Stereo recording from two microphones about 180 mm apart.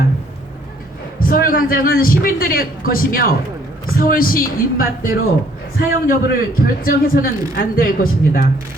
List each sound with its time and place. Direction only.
1.2 s a man's voice: 50° left (ahead or behind)